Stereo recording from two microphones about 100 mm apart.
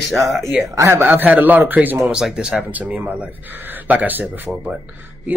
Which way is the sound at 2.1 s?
10° right (ahead or behind).